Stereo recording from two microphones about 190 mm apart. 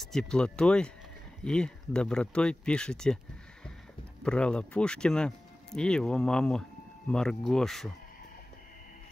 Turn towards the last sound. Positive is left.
turn(degrees=0)  # may be behind; listen again after turning